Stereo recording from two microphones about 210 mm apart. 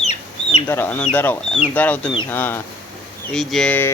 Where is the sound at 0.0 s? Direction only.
30° left (ahead or behind).